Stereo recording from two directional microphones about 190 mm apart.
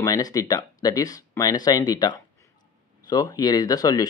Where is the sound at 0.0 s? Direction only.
20° left (ahead or behind).